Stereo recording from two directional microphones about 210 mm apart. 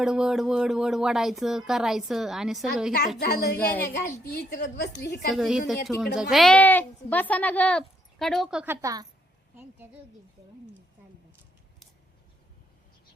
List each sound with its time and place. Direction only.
0.0 s a woman's voice: 5° right (ahead or behind)
3.2 s a woman's voice: 50° left (ahead or behind)
5.3 s a woman's voice: centre (ahead or behind)